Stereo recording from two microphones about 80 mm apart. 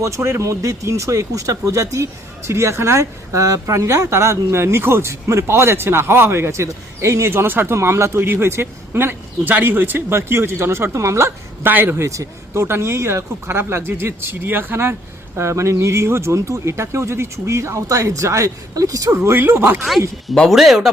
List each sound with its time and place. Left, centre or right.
0.0 s speech: right
7.8 s speech: right
12.0 s speech: right
20.2 s speech: centre